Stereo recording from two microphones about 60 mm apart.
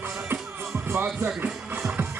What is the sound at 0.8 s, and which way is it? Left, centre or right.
Heart sounds, right.